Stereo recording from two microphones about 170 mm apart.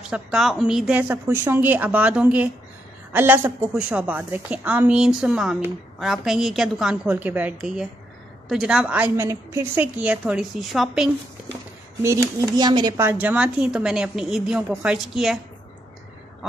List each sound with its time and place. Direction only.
0.1 s a woman's voice: centre (ahead or behind)
12.0 s speech: 15° right (ahead or behind)
13.2 s a woman's voice: 10° right (ahead or behind)